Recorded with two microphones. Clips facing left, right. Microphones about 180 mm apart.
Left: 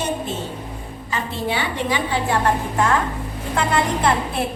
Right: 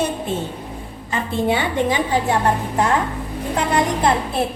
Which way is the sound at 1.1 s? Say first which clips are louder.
Right 4 dB; 50° right (ahead or behind).